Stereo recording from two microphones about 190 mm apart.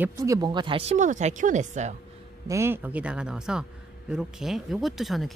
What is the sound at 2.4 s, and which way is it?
Speech, 15° right (ahead or behind).